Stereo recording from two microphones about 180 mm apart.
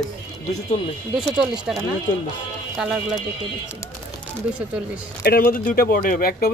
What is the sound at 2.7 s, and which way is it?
Speech, 5° right (ahead or behind).